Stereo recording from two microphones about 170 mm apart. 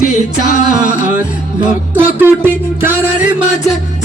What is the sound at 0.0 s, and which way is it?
A capella, 45° left (ahead or behind).